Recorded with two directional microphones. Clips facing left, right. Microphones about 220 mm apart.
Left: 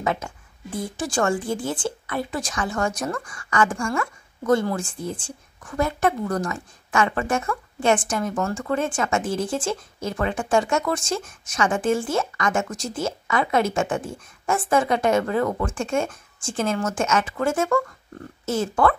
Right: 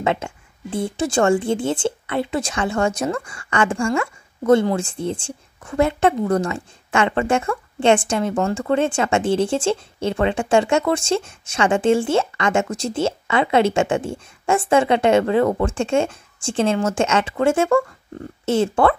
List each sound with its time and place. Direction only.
0.0 s speech: 25° right (ahead or behind)